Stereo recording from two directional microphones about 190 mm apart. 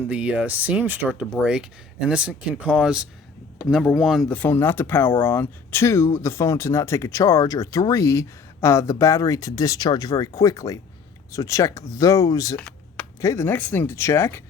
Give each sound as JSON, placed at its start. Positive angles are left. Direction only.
{"t": 0.1, "sound": "speech", "side_deg": -5}
{"t": 4.4, "sound": "speech", "side_deg": 10}
{"t": 12.5, "sound": "speech", "side_deg": 10}